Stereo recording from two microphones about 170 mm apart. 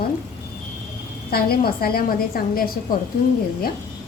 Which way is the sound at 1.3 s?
60° left (ahead or behind).